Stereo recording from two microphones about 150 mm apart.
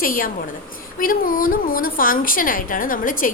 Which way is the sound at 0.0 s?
65° left (ahead or behind).